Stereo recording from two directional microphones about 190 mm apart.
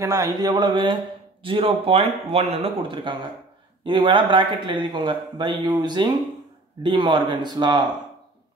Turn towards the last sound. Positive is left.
turn(degrees=-25)  # may be behind; listen again after turning